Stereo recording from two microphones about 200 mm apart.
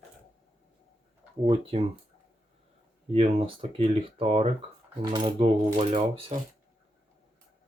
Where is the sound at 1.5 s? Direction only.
30° right (ahead or behind).